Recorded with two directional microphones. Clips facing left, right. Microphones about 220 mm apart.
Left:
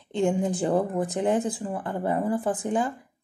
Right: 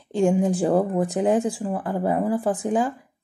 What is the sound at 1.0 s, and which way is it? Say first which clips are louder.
Speech: right 4 dB; 15° right (ahead or behind).